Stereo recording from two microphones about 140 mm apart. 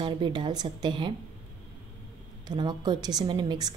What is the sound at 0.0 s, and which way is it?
A woman's voice, 35° right (ahead or behind).